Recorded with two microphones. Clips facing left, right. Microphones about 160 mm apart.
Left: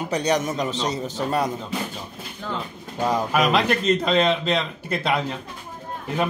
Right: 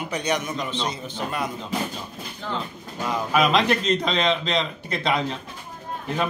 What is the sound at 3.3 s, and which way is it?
A man's voice, 10° left (ahead or behind).